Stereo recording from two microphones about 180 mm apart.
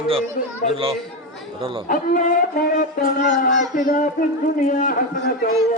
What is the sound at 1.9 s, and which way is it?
A man's voice, 50° left (ahead or behind).